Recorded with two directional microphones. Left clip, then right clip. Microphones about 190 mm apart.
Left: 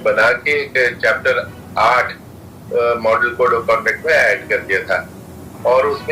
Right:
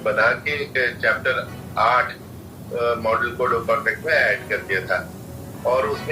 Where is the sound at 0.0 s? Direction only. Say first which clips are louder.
Left 5 dB; 45° left (ahead or behind).